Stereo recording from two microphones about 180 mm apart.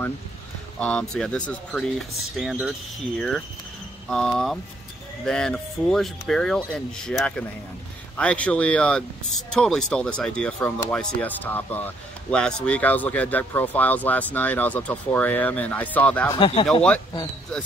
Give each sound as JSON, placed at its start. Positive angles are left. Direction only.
{"t": 0.7, "sound": "speech", "side_deg": 5}
{"t": 16.3, "sound": "speech", "side_deg": 25}